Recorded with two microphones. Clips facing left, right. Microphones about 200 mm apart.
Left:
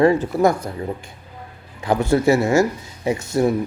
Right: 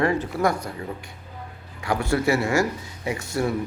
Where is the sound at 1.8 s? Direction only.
20° left (ahead or behind).